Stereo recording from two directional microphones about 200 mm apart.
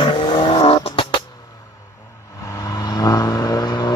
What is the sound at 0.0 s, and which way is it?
Vehicle, 25° left (ahead or behind).